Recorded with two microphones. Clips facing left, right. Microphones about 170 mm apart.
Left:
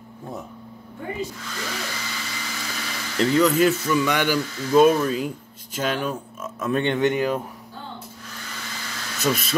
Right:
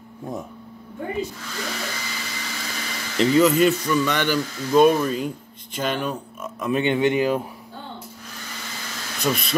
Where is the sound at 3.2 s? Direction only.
Centre (ahead or behind).